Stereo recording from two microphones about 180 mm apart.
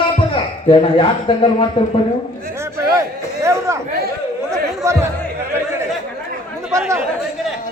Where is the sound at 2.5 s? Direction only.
15° right (ahead or behind).